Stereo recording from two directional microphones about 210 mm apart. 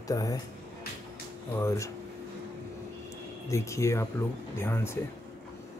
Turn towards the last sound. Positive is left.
turn(degrees=10)  # may be behind; listen again after turning